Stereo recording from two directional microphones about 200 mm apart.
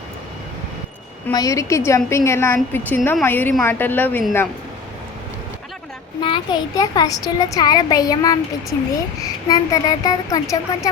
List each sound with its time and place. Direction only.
1.3 s a woman's voice: 15° left (ahead or behind)
6.2 s a child's voice: 25° left (ahead or behind)